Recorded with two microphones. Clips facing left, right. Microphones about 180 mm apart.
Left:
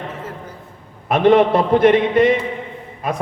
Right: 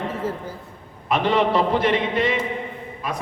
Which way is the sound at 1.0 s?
50° left (ahead or behind).